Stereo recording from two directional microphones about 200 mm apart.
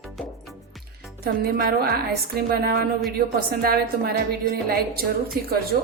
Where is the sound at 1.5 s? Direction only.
50° right (ahead or behind).